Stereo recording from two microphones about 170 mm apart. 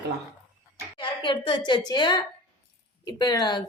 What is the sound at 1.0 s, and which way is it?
A woman's voice, 30° left (ahead or behind).